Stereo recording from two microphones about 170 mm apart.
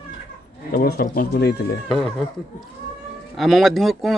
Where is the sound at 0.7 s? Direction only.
65° left (ahead or behind).